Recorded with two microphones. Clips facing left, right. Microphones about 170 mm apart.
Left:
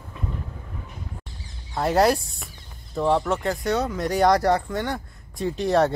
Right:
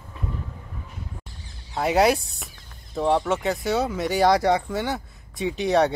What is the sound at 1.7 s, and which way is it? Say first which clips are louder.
Speech: even; centre (ahead or behind).